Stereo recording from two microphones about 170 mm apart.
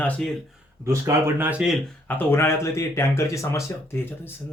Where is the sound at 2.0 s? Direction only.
10° left (ahead or behind).